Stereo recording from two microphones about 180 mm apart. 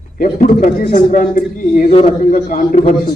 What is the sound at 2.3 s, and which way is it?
Speech, 50° left (ahead or behind).